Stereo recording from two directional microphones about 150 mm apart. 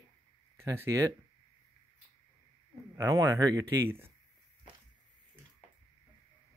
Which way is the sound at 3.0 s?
25° right (ahead or behind).